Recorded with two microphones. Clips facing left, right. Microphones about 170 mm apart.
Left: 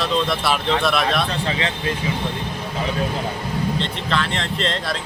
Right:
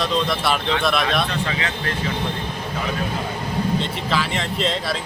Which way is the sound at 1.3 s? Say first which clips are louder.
Left 1 dB; 30° left (ahead or behind).